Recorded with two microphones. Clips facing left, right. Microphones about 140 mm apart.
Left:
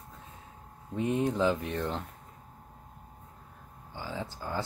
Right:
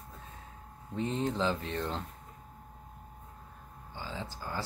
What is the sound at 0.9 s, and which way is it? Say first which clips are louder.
Speech: left 4 dB; 15° left (ahead or behind).